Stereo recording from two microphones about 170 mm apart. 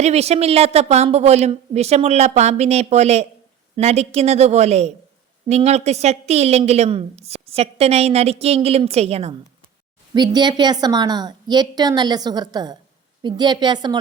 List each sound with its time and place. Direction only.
0.0 s a woman's voice: 40° right (ahead or behind)
10.2 s a woman's voice: 25° right (ahead or behind)